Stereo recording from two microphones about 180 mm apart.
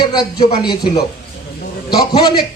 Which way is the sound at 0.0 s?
25° left (ahead or behind).